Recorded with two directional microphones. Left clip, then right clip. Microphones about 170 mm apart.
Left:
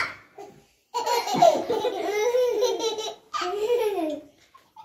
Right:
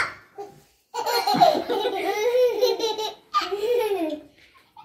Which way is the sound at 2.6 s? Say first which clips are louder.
Right 2 dB; 20° left (ahead or behind).